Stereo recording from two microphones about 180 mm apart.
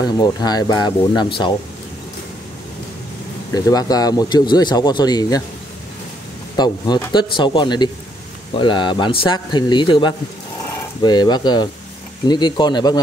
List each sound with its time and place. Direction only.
0.0 s speech: 20° left (ahead or behind)
3.5 s speech: 20° left (ahead or behind)
6.5 s speech: 25° left (ahead or behind)